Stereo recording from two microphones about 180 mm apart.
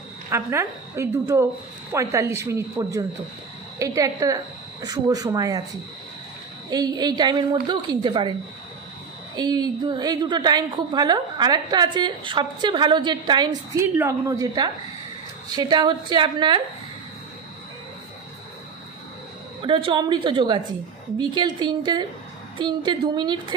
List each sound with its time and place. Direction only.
0.3 s a woman's voice: 15° right (ahead or behind)
6.7 s a woman's voice: 20° right (ahead or behind)
9.3 s a woman's voice: 20° right (ahead or behind)
19.6 s a woman's voice: 30° right (ahead or behind)